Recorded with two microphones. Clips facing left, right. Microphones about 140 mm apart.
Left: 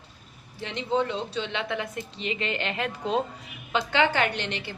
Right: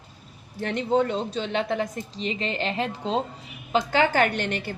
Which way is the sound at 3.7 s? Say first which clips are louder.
Right 3 dB; 40° right (ahead or behind).